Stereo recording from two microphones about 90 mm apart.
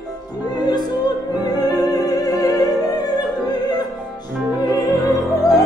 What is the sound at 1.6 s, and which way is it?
Opera, 45° left (ahead or behind).